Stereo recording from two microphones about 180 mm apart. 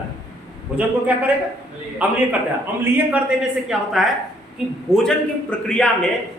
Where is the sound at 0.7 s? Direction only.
10° right (ahead or behind).